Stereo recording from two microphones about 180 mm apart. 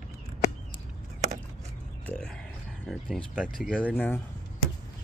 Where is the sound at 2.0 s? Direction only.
5° left (ahead or behind).